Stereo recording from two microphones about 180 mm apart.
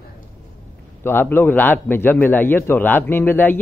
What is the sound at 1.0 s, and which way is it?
A man's voice, 10° left (ahead or behind).